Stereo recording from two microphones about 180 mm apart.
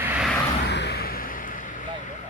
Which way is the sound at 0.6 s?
70° left (ahead or behind).